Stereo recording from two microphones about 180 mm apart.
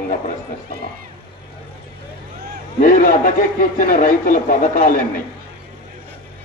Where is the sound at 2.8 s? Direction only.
50° left (ahead or behind).